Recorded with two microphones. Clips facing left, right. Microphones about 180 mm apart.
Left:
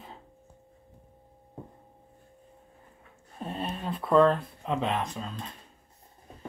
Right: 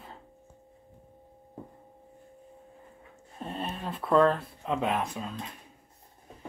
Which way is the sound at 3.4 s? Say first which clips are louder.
Left 1 dB; centre (ahead or behind).